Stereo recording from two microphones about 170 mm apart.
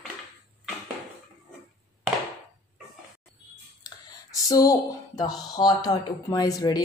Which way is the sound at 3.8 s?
20° left (ahead or behind).